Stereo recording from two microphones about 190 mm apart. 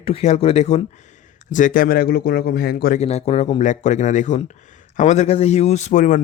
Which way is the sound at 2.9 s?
35° left (ahead or behind).